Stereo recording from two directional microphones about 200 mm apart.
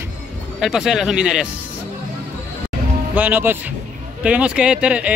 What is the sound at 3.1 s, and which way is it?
Speech, 10° right (ahead or behind).